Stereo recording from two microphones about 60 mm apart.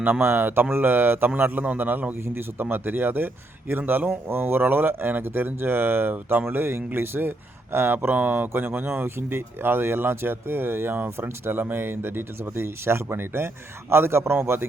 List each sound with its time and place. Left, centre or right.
0.2 s speech: right
2.2 s speech: right